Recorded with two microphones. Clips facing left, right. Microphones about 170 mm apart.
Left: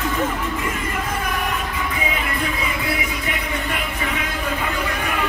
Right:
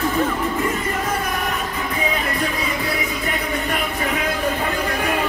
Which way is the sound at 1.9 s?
40° right (ahead or behind).